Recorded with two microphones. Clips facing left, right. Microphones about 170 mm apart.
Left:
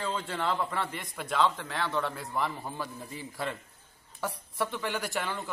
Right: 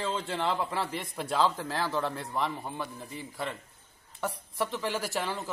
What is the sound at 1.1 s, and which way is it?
Speech, 35° right (ahead or behind).